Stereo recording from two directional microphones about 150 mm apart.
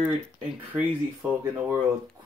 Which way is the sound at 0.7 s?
10° right (ahead or behind).